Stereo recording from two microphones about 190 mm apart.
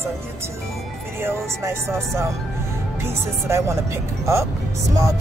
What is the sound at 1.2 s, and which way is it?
Speech, 15° right (ahead or behind).